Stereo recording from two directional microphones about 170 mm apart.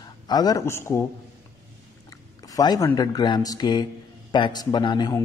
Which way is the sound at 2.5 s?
20° left (ahead or behind).